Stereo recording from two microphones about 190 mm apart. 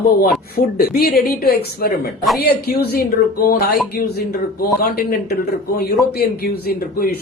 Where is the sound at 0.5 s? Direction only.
50° left (ahead or behind).